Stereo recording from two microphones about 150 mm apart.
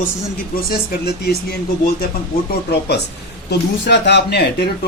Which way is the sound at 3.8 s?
90° left.